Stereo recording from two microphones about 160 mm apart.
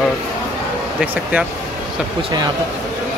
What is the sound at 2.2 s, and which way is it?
Speech, 25° right (ahead or behind).